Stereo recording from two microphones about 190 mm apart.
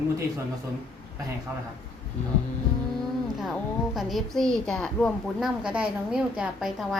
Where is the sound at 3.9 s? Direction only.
Centre (ahead or behind).